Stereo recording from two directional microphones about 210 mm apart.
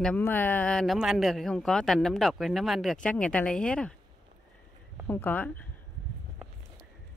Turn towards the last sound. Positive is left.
turn(degrees=5)  # may be behind; listen again after turning